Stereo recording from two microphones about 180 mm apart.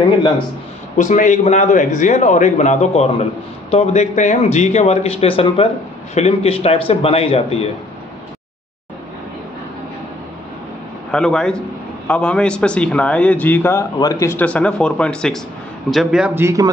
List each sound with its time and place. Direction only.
0.9 s a man's voice: 45° left (ahead or behind)
11.1 s a man's voice: 5° left (ahead or behind); by 16.7 s 15° right (ahead or behind)